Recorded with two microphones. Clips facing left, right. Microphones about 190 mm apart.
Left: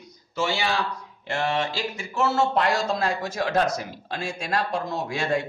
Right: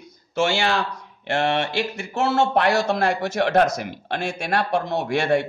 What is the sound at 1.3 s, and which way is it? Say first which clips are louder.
Speech: right 4 dB; 65° right (ahead or behind).